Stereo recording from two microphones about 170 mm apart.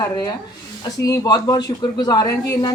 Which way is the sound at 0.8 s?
20° left (ahead or behind).